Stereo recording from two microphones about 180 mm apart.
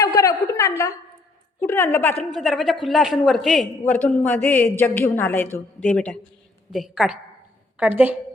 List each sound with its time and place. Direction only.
0.2 s a sound: 15° left (ahead or behind)
1.6 s a woman's voice: 15° left (ahead or behind)
2.1 s a man's voice: centre (ahead or behind)
6.7 s a man's voice: 5° right (ahead or behind)